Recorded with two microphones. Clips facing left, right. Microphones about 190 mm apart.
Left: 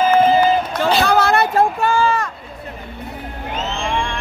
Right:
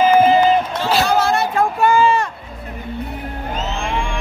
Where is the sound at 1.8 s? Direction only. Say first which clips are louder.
Right 3 dB; 20° right (ahead or behind).